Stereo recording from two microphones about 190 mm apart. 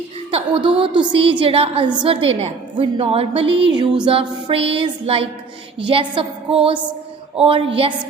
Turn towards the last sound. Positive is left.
turn(degrees=-30)  # may be behind; listen again after turning